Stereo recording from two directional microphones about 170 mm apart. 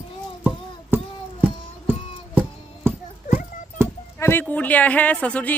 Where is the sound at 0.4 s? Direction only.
10° right (ahead or behind).